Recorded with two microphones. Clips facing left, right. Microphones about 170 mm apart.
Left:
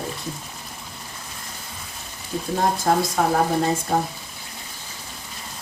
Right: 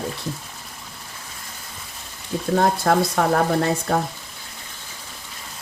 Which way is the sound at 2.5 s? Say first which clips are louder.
Right 2 dB; 60° right (ahead or behind).